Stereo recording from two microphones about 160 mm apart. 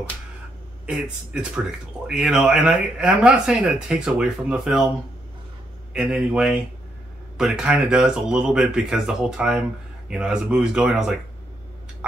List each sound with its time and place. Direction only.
0.8 s speech: 5° right (ahead or behind)
5.9 s speech: 5° right (ahead or behind)